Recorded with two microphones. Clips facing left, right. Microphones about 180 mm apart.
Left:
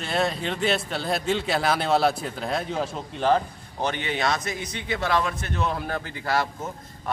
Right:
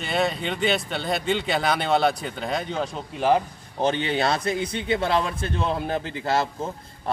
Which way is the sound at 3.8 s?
30° right (ahead or behind).